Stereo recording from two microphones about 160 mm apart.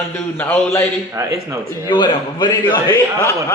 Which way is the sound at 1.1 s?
20° right (ahead or behind).